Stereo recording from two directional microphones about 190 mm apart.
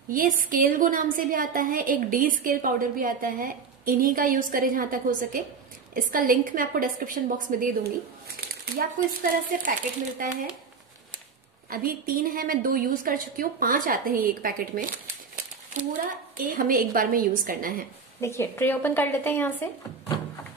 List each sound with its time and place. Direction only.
0.1 s a woman's voice: 45° right (ahead or behind)
9.5 s a woman's voice: 45° right (ahead or behind)
11.7 s a woman's voice: 50° right (ahead or behind)
15.3 s a sound: 40° right (ahead or behind)
16.5 s a woman's voice: 45° right (ahead or behind)
18.2 s speech: 15° left (ahead or behind)